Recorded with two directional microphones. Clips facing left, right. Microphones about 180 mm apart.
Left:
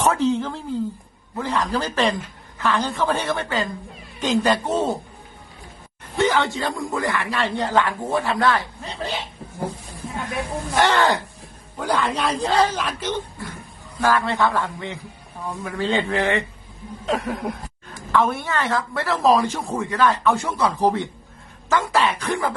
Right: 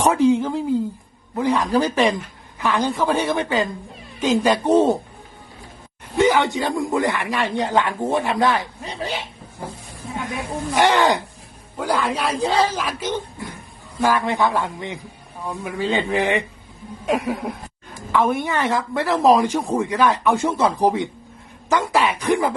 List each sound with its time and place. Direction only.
0.0 s a man's voice: 10° right (ahead or behind)
6.1 s a man's voice: 10° right (ahead or behind)
10.8 s a man's voice: 15° right (ahead or behind)
11.8 s a man's voice: 5° right (ahead or behind)